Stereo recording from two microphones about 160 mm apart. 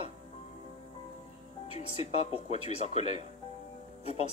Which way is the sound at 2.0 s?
40° left (ahead or behind).